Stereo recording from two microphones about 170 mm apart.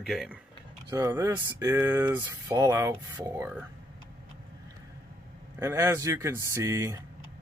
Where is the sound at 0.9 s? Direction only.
20° right (ahead or behind).